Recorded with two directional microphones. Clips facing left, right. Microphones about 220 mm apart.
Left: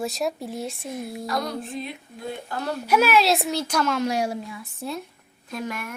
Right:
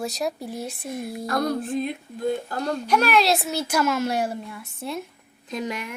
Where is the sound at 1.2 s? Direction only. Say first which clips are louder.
Right 5 dB; 50° right (ahead or behind).